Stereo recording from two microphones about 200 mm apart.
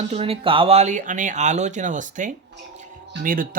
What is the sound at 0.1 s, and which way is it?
Speech, 30° right (ahead or behind).